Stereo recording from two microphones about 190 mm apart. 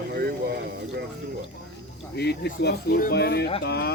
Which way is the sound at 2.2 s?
60° left (ahead or behind).